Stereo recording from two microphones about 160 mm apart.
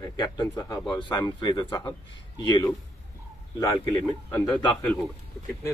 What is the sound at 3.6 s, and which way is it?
A man's voice, 15° left (ahead or behind).